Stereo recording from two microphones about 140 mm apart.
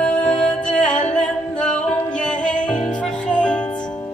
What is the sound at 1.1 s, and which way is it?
Singing, 5° left (ahead or behind).